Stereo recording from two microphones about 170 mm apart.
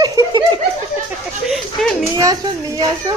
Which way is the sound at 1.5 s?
Centre (ahead or behind).